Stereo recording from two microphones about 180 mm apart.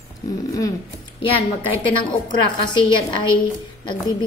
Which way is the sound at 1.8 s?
25° left (ahead or behind).